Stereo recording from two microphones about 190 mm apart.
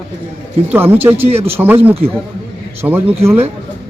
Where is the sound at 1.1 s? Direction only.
30° right (ahead or behind).